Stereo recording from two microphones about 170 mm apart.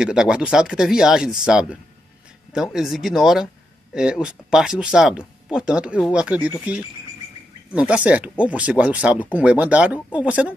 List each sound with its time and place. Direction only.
0.0 s speech: 5° right (ahead or behind)